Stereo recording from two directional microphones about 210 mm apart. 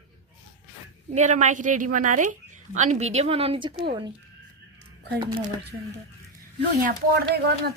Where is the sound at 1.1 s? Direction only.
35° right (ahead or behind).